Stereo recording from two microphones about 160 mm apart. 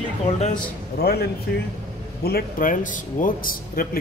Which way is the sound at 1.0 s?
75° left (ahead or behind).